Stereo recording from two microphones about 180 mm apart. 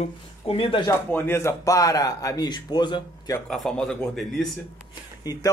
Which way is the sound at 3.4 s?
5° left (ahead or behind).